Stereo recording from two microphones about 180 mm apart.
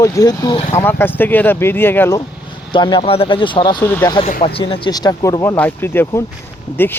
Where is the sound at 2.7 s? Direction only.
25° left (ahead or behind).